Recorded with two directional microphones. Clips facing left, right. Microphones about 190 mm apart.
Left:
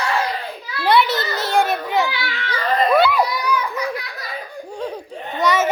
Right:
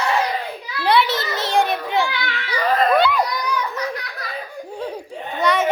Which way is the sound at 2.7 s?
5° left (ahead or behind).